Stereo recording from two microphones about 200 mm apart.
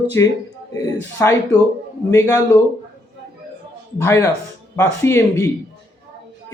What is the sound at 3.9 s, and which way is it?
Speech, 15° left (ahead or behind).